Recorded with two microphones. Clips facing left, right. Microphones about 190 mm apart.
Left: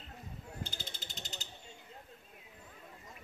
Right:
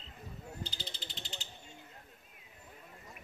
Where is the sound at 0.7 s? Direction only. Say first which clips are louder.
Right 1 dB; 50° left (ahead or behind).